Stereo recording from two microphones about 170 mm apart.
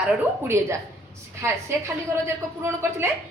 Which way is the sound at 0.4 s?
15° right (ahead or behind).